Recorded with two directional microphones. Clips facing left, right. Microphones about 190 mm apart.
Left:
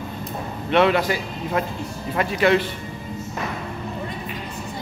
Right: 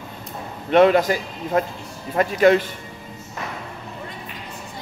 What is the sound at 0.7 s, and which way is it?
A man's voice, 45° right (ahead or behind).